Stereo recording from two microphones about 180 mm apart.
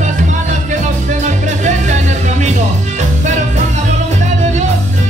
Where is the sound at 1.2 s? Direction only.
40° right (ahead or behind).